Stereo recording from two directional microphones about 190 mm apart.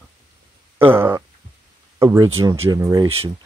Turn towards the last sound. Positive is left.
turn(degrees=-15)  # may be behind; listen again after turning